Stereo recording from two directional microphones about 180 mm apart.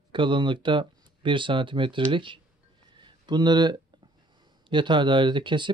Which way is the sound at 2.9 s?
25° right (ahead or behind).